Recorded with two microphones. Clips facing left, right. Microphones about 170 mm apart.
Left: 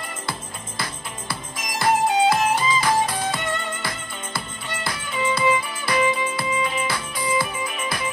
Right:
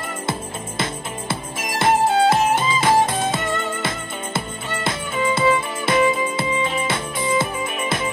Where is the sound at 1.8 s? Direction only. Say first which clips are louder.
Right 2 dB; 25° right (ahead or behind).